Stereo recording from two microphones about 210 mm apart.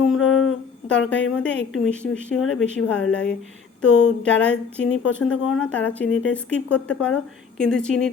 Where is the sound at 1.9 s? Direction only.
5° left (ahead or behind).